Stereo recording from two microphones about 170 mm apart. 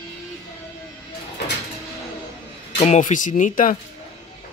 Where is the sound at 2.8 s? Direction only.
45° left (ahead or behind).